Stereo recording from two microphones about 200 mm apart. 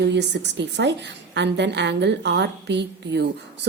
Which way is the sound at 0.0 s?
60° right (ahead or behind).